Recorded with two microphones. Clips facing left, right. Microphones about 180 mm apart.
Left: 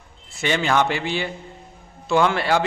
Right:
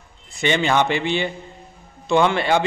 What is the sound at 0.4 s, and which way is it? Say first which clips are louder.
A man's voice: right 1 dB; 5° left (ahead or behind).